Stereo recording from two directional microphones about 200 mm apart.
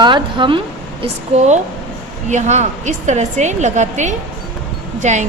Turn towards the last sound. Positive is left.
turn(degrees=-35)  # may be behind; listen again after turning